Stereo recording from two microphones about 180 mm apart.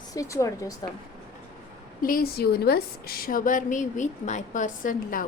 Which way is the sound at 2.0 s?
55° left (ahead or behind).